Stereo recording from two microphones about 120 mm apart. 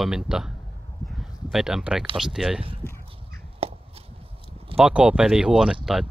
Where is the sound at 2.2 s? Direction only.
5° right (ahead or behind).